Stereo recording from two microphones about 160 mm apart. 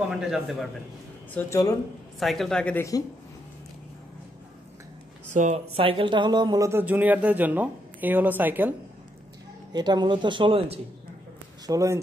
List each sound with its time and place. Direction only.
0.1 s speech: centre (ahead or behind)
1.4 s speech: 10° left (ahead or behind)
5.3 s speech: 50° right (ahead or behind); by 8.7 s 10° right (ahead or behind)
9.7 s speech: 25° right (ahead or behind)
11.6 s speech: 20° right (ahead or behind)